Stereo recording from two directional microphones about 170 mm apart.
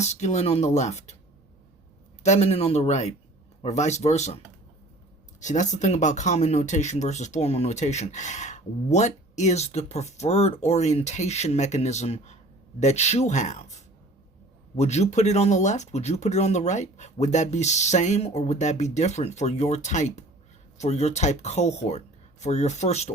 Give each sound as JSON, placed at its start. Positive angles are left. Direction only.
{"t": 0.0, "sound": "speech", "side_deg": 40}
{"t": 2.2, "sound": "speech", "side_deg": 40}
{"t": 5.4, "sound": "speech", "side_deg": 45}